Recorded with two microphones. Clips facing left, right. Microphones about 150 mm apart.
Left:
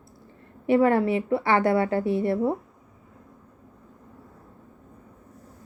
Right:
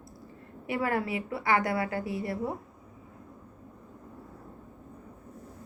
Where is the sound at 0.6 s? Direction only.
25° left (ahead or behind).